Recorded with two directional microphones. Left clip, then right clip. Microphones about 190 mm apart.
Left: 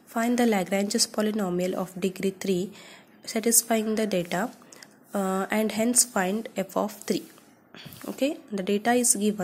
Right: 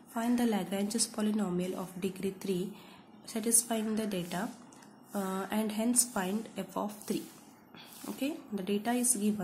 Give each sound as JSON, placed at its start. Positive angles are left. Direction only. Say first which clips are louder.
{"t": 0.1, "sound": "a woman's voice", "louder": "left 8 dB", "side_deg": 35}